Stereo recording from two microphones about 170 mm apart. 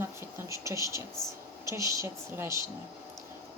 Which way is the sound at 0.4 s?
15° right (ahead or behind).